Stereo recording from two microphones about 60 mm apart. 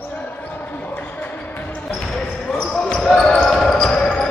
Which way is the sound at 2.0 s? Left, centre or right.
Centre.